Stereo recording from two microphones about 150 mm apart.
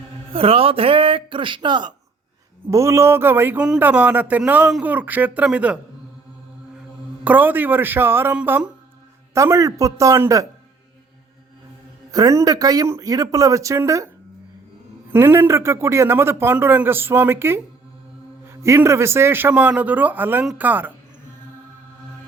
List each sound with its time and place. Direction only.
0.3 s speech: 40° right (ahead or behind)
2.6 s speech: 20° right (ahead or behind)
7.3 s speech: 10° right (ahead or behind)
9.3 s speech: 20° right (ahead or behind)
12.1 s speech: 25° right (ahead or behind)
15.1 s speech: 15° right (ahead or behind)